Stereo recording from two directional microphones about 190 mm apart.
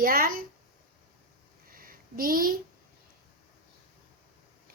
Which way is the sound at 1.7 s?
50° right (ahead or behind).